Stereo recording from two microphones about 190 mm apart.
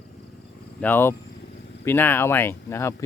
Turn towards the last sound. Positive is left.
turn(degrees=15)  # may be behind; listen again after turning